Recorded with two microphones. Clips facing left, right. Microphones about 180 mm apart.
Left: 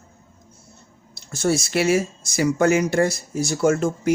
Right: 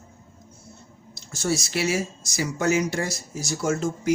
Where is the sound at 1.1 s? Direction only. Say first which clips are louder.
Left 5 dB; 60° left (ahead or behind).